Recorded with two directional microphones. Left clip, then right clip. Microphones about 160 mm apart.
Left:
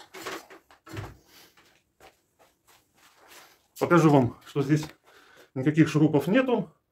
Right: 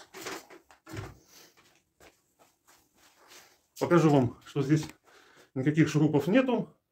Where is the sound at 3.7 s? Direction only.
20° left (ahead or behind).